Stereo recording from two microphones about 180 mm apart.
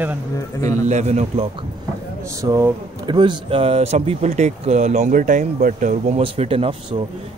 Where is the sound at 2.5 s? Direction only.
25° right (ahead or behind); by 6.2 s 45° right (ahead or behind).